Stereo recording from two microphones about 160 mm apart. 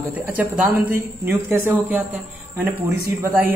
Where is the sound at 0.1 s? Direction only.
10° right (ahead or behind).